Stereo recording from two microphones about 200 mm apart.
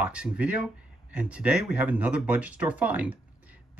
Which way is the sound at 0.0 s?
5° right (ahead or behind).